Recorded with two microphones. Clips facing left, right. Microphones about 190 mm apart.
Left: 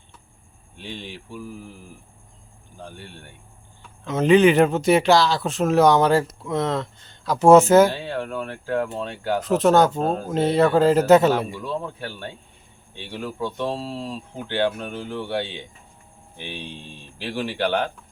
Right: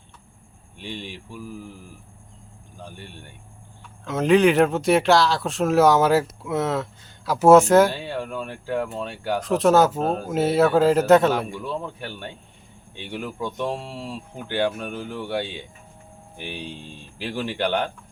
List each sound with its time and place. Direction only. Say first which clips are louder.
4.0 s speech: left 2 dB; centre (ahead or behind)
7.9 s speech: left 1 dB; 10° right (ahead or behind)
9.4 s speech: even; centre (ahead or behind)
11.6 s speech: left 1 dB; 15° right (ahead or behind)
17.3 s speech: left 1 dB; 10° left (ahead or behind)